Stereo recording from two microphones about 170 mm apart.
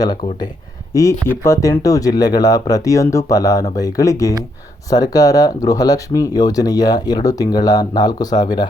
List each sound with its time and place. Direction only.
0.0 s speech: 25° left (ahead or behind)